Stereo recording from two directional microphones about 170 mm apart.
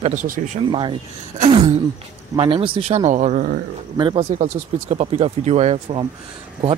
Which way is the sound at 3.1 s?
45° right (ahead or behind).